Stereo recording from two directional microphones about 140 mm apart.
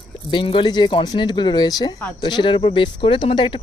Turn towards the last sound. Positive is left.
turn(degrees=35)  # may be behind; listen again after turning